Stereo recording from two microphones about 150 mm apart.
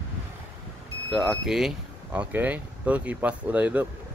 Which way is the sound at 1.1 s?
Centre (ahead or behind).